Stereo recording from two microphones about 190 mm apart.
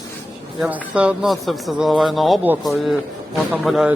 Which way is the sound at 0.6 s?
5° right (ahead or behind).